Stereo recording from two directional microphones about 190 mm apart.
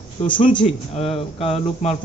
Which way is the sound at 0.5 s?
30° left (ahead or behind).